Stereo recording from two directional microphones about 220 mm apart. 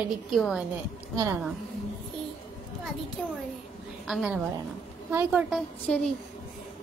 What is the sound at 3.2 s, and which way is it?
A woman's voice, 5° left (ahead or behind).